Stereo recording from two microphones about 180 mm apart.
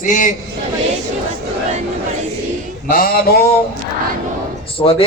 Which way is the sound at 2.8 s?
55° left (ahead or behind).